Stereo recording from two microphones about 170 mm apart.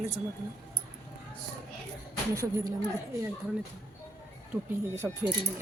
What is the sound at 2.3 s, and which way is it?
Speech, 20° right (ahead or behind).